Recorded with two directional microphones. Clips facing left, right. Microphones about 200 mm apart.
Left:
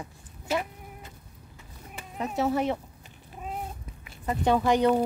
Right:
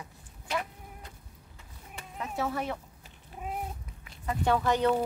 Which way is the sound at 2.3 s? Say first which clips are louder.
Left 6 dB; 25° left (ahead or behind).